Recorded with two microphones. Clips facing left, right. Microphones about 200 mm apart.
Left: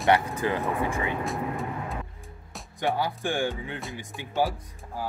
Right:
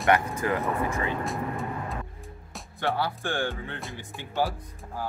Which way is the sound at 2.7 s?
15° left (ahead or behind).